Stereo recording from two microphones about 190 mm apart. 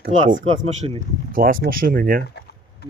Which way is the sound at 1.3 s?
45° right (ahead or behind).